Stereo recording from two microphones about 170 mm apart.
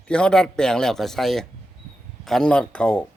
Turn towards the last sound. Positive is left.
turn(degrees=5)  # may be behind; listen again after turning